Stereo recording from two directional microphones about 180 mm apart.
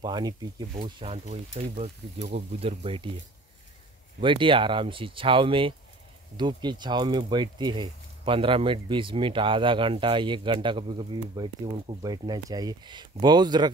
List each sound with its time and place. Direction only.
0.0 s speech: 20° right (ahead or behind)
4.2 s speech: 30° right (ahead or behind)